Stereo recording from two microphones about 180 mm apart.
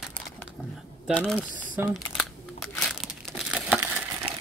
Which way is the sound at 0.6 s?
Centre (ahead or behind).